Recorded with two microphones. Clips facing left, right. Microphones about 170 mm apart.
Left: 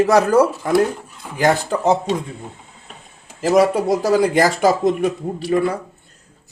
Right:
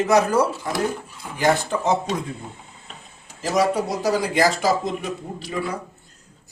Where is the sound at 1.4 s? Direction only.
35° left (ahead or behind).